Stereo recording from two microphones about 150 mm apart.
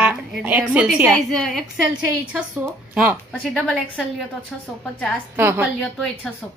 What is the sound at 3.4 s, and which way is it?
Speech, centre (ahead or behind).